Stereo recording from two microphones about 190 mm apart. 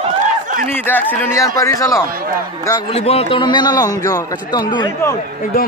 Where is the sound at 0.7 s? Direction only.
10° left (ahead or behind).